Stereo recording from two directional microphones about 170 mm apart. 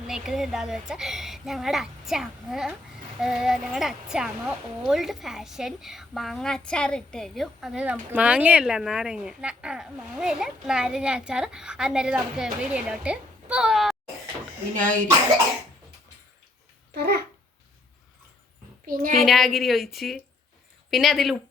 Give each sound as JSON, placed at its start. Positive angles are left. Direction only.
{"t": 0.1, "sound": "speech", "side_deg": 0}
{"t": 14.7, "sound": "speech", "side_deg": -50}
{"t": 19.1, "sound": "speech", "side_deg": 0}